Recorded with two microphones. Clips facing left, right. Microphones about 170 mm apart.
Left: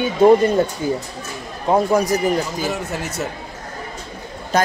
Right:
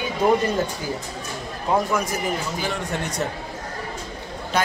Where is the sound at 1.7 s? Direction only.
35° left (ahead or behind).